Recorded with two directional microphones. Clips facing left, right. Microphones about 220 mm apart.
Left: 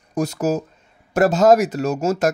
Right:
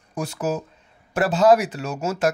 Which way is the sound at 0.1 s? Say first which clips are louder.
Left 5 dB; 40° left (ahead or behind).